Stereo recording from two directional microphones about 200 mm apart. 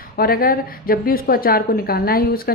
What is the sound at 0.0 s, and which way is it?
A woman's voice, 45° left (ahead or behind).